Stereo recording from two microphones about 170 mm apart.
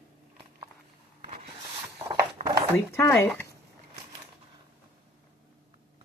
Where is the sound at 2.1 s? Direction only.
20° right (ahead or behind).